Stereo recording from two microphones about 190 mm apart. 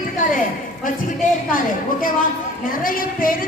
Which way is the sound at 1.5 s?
45° left (ahead or behind).